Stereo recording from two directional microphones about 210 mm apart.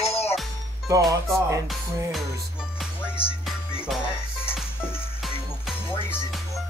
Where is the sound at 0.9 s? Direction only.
15° right (ahead or behind).